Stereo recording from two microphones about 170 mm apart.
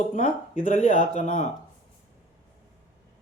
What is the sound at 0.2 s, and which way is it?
Speech, 50° left (ahead or behind).